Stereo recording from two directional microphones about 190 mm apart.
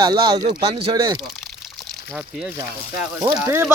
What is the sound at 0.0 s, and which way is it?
Speech, 25° right (ahead or behind).